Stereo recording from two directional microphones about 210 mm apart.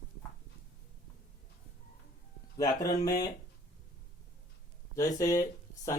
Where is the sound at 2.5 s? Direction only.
15° left (ahead or behind).